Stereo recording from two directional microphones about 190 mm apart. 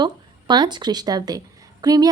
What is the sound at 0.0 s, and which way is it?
A woman's voice, 25° right (ahead or behind).